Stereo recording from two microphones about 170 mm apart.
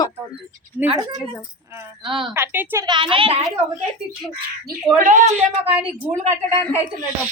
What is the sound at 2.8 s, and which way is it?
Speech, 30° right (ahead or behind).